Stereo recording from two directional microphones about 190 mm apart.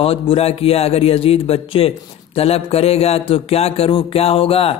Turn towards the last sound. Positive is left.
turn(degrees=30)  # may be behind; listen again after turning